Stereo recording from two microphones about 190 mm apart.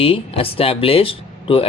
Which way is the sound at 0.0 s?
30° left (ahead or behind).